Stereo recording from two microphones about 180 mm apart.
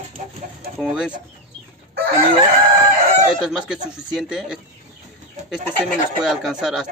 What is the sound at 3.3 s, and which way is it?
Speech, 5° right (ahead or behind).